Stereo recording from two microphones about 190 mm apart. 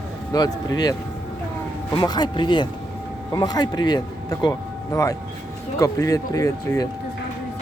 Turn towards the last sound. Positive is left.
turn(degrees=20)  # may be behind; listen again after turning